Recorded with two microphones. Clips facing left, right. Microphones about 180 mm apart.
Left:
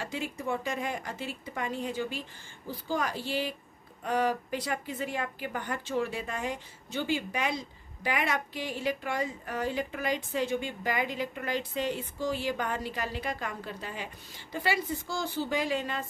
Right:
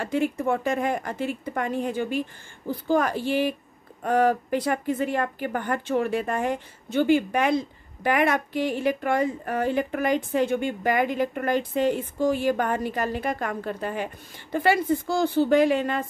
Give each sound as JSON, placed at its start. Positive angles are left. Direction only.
{"t": 0.0, "sound": "a woman's voice", "side_deg": -55}